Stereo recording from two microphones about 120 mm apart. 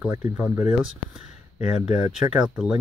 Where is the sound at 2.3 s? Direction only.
5° right (ahead or behind).